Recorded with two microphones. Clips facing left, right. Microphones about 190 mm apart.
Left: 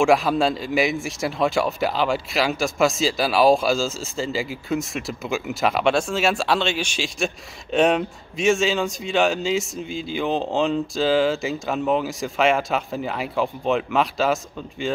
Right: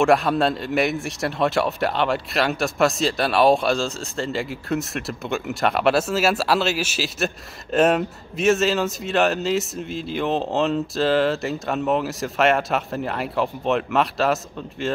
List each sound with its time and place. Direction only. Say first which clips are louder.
0.0 s speech: even; centre (ahead or behind)